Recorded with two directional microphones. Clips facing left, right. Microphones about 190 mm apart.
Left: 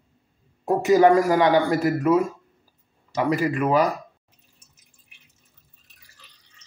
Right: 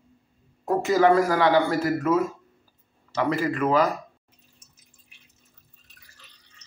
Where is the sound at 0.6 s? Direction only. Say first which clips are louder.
Left 4 dB; 15° left (ahead or behind).